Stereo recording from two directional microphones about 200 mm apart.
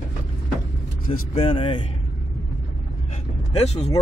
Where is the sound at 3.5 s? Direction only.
30° left (ahead or behind).